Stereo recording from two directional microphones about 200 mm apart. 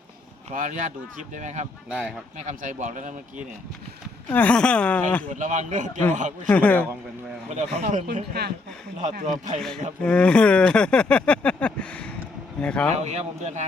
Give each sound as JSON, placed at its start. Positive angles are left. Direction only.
{"t": 0.5, "sound": "speech", "side_deg": -40}
{"t": 1.9, "sound": "speech", "side_deg": -5}
{"t": 2.4, "sound": "speech", "side_deg": -40}
{"t": 4.3, "sound": "speech", "side_deg": 5}
{"t": 5.3, "sound": "speech", "side_deg": -40}
{"t": 6.5, "sound": "speech", "side_deg": 10}
{"t": 8.0, "sound": "speech", "side_deg": -55}
{"t": 9.0, "sound": "speech", "side_deg": -40}
{"t": 9.6, "sound": "a man's voice", "side_deg": 5}
{"t": 13.0, "sound": "speech", "side_deg": -35}